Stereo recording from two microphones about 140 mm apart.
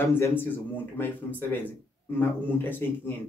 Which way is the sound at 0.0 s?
15° left (ahead or behind).